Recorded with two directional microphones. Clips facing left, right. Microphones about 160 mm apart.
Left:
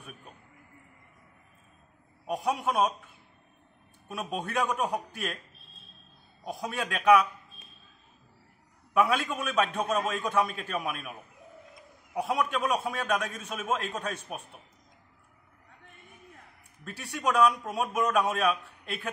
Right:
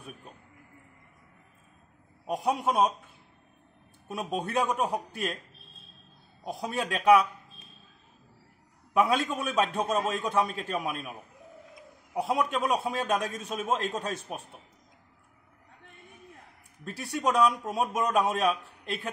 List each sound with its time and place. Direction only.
2.3 s a man's voice: 35° right (ahead or behind)
4.1 s a man's voice: 35° right (ahead or behind)
6.4 s a man's voice: 30° right (ahead or behind)
8.9 s a man's voice: 35° right (ahead or behind)
16.8 s a man's voice: 35° right (ahead or behind)